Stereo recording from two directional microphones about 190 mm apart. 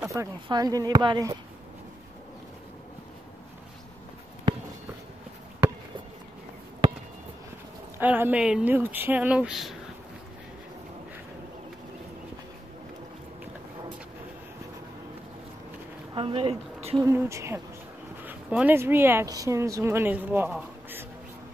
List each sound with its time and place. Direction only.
0.0 s speech: 15° right (ahead or behind)
8.0 s speech: 10° right (ahead or behind)
16.2 s a sound: 30° right (ahead or behind)
17.0 s speech: 15° right (ahead or behind)